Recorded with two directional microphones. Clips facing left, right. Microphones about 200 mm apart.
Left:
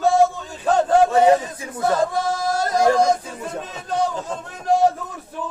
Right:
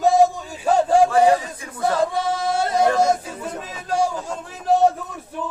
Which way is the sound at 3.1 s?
5° right (ahead or behind).